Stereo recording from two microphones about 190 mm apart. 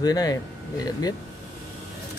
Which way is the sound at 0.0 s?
20° left (ahead or behind).